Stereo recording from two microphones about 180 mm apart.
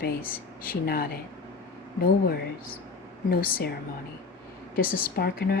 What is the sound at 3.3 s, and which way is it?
Speech, 55° left (ahead or behind).